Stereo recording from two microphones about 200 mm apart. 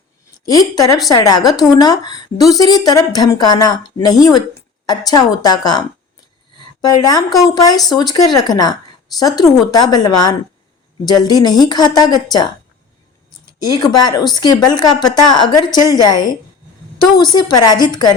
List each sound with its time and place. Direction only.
0.4 s a woman's voice: 20° left (ahead or behind)
6.8 s a woman's voice: 20° left (ahead or behind)
13.7 s a woman's voice: 20° left (ahead or behind)